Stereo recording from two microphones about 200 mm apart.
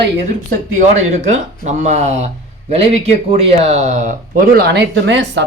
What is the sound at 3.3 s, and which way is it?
A man's voice, 30° right (ahead or behind).